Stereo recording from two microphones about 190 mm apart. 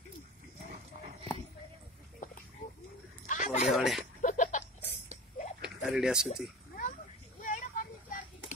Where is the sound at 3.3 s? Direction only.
40° left (ahead or behind).